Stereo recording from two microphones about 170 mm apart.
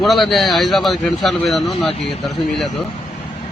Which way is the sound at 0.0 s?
Centre (ahead or behind).